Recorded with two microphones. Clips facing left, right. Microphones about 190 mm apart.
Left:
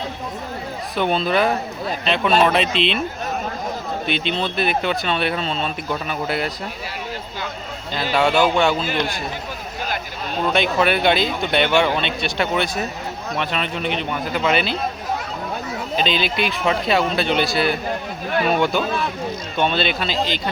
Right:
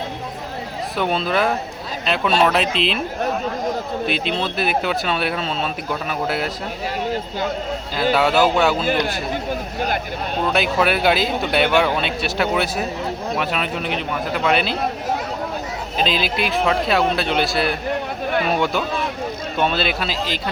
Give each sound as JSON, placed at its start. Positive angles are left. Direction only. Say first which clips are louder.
{"t": 0.9, "sound": "speech", "louder": "left 1 dB", "side_deg": 0}
{"t": 4.0, "sound": "speech", "louder": "left 1 dB", "side_deg": 0}
{"t": 8.1, "sound": "speech", "louder": "even", "side_deg": -5}
{"t": 9.8, "sound": "speech", "louder": "right 3 dB", "side_deg": -55}
{"t": 10.5, "sound": "speech", "louder": "left 1 dB", "side_deg": -5}
{"t": 16.0, "sound": "speech", "louder": "even", "side_deg": 0}